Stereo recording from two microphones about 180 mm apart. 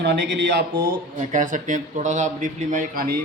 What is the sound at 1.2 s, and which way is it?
A man's voice, 45° right (ahead or behind).